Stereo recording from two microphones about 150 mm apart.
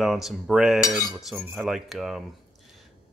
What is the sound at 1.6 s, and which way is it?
Speech, centre (ahead or behind).